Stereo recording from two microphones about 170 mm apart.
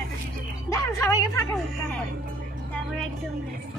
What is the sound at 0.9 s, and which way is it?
Speech, 20° left (ahead or behind).